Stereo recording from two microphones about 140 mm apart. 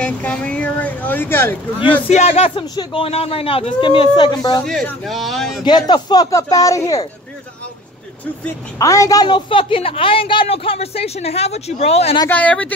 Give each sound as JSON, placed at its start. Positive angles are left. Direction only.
{"t": 0.0, "sound": "speech", "side_deg": 10}
{"t": 2.0, "sound": "speech", "side_deg": 50}
{"t": 2.7, "sound": "a woman's voice", "side_deg": 35}
{"t": 4.6, "sound": "a man's voice", "side_deg": 0}
{"t": 5.7, "sound": "speech", "side_deg": 30}
{"t": 8.7, "sound": "a woman's voice", "side_deg": 25}
{"t": 12.3, "sound": "speech", "side_deg": 10}